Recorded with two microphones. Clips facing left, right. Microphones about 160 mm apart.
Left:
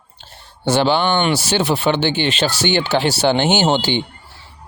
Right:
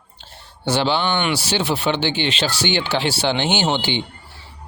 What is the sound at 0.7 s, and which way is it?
Speech, 50° left (ahead or behind).